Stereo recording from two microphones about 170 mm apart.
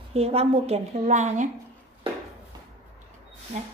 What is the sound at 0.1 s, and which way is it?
A woman's voice, 35° right (ahead or behind).